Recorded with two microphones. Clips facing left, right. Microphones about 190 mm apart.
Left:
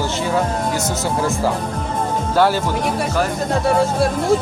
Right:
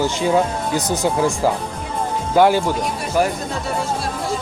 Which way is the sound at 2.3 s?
15° right (ahead or behind).